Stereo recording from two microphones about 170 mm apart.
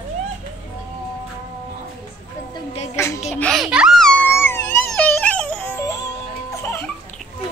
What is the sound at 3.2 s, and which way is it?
Baby cry, 5° left (ahead or behind).